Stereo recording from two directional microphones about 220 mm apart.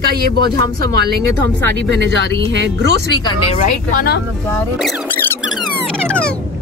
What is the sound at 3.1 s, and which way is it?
Speech, 20° left (ahead or behind).